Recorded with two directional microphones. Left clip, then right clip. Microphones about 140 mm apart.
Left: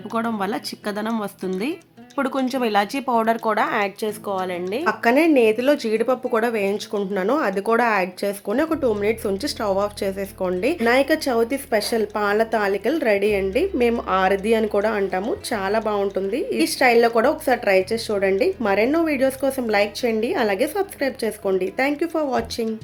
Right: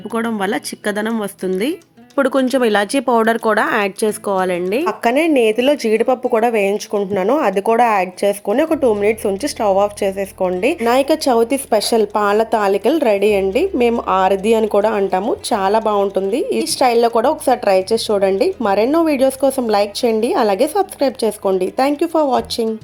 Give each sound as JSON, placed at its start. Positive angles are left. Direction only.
{"t": 0.1, "sound": "a woman's voice", "side_deg": -20}
{"t": 2.1, "sound": "a woman's voice", "side_deg": -35}
{"t": 10.8, "sound": "a woman's voice", "side_deg": -35}